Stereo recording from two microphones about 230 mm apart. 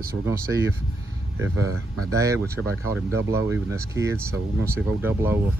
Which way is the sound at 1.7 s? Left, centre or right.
Right.